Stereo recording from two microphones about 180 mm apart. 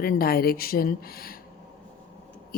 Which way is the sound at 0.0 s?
55° left (ahead or behind).